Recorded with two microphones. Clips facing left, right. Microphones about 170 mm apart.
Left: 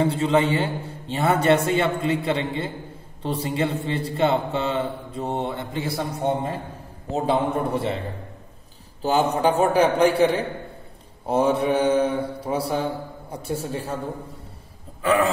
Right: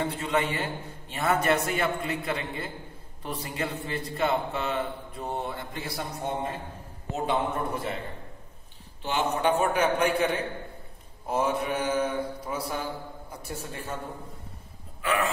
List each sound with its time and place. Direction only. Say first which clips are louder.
0.0 s a man's voice: left 8 dB; 30° left (ahead or behind)
9.0 s a man's voice: left 6 dB; 35° left (ahead or behind)
15.0 s a sound: left 8 dB; 40° left (ahead or behind)